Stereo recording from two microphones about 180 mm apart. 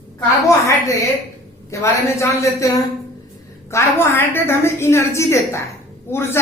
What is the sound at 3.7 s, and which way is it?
A woman's voice, 15° left (ahead or behind).